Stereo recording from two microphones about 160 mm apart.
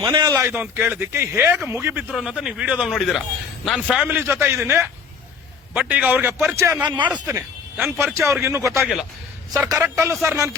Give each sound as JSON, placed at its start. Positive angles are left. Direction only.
{"t": 0.0, "sound": "a man's voice", "side_deg": -20}
{"t": 2.0, "sound": "speech", "side_deg": 0}
{"t": 4.0, "sound": "a man's voice", "side_deg": -15}
{"t": 8.8, "sound": "speech", "side_deg": 0}
{"t": 9.5, "sound": "a man's voice", "side_deg": -20}